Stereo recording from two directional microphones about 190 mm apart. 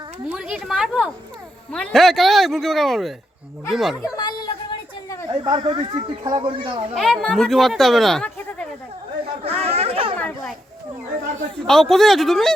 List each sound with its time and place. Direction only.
0.3 s speech: 5° right (ahead or behind)
4.2 s a sound: 20° left (ahead or behind)
5.3 s speech: 25° right (ahead or behind)
6.9 s speech: centre (ahead or behind)
9.4 s chatter: 30° right (ahead or behind)
10.2 s a sound: 5° left (ahead or behind)
11.6 s speech: centre (ahead or behind)